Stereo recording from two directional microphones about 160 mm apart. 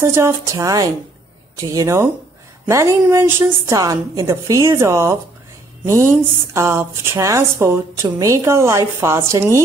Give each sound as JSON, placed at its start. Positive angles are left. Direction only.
{"t": 0.0, "sound": "a woman's voice", "side_deg": -15}
{"t": 6.5, "sound": "a woman's voice", "side_deg": -20}